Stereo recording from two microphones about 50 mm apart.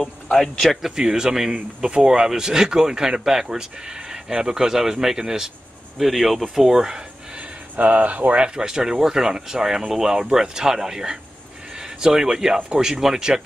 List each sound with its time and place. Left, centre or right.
0.0 s speech: centre
0.7 s speech: centre
7.7 s speech: right
8.4 s speech: centre
12.5 s speech: right
12.8 s speech: centre